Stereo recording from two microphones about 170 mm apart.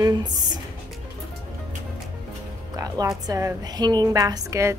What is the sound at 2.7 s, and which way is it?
Music, 20° right (ahead or behind).